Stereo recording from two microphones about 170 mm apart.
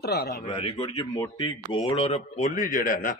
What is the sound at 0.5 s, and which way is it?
Speech, 35° left (ahead or behind).